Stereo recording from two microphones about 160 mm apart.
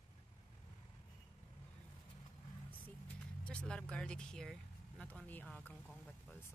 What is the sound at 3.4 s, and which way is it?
Speech, 5° left (ahead or behind).